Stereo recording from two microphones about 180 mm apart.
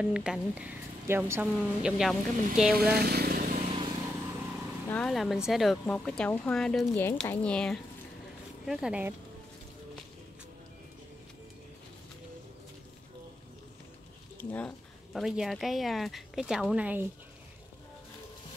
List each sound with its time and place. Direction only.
0.0 s speech: 5° right (ahead or behind)
2.7 s vehicle: 60° right (ahead or behind); by 3.9 s 35° right (ahead or behind)
4.8 s speech: 5° left (ahead or behind)
14.4 s speech: 10° left (ahead or behind)
15.1 s speech: centre (ahead or behind)